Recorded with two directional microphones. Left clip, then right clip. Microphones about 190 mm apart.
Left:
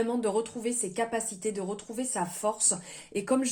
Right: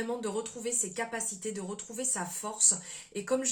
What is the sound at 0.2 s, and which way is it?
A woman's voice, 35° left (ahead or behind).